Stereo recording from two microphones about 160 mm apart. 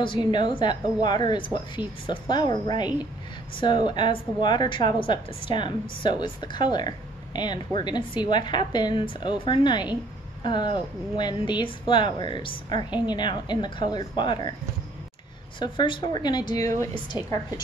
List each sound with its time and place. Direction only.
0.0 s a woman's voice: 30° left (ahead or behind)
15.6 s a woman's voice: 30° left (ahead or behind)